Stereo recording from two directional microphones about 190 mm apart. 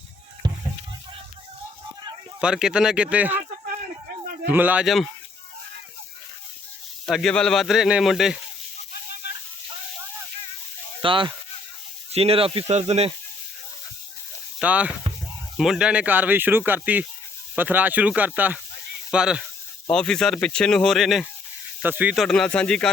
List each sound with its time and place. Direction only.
0.4 s rowboat: 25° right (ahead or behind)
2.4 s speech: 5° right (ahead or behind)
4.5 s speech: 10° right (ahead or behind)
7.0 s speech: centre (ahead or behind)
11.0 s speech: 25° right (ahead or behind)
14.6 s speech: 5° right (ahead or behind)
22.1 s speech: centre (ahead or behind)